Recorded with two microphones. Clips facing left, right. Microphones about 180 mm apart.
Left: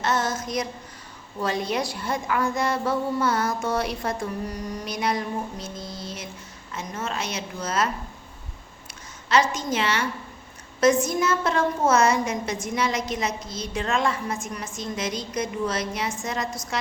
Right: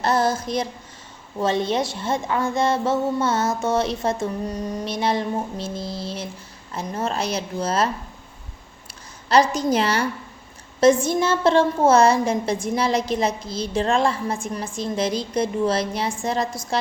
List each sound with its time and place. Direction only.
0.0 s child singing: 35° right (ahead or behind)
1.4 s a woman's voice: 25° right (ahead or behind)
9.3 s a woman's voice: 35° right (ahead or behind)